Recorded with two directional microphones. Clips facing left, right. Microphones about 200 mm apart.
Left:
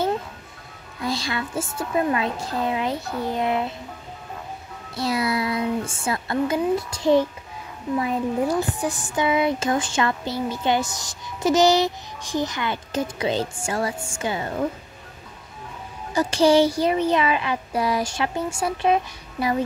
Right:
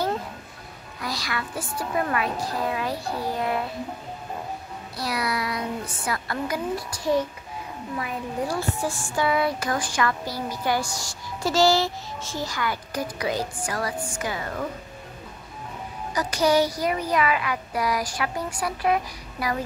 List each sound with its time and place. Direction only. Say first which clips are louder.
1.0 s speech: left 5 dB; 25° left (ahead or behind)
4.9 s speech: left 5 dB; 25° left (ahead or behind)
16.1 s speech: left 4 dB; 30° left (ahead or behind)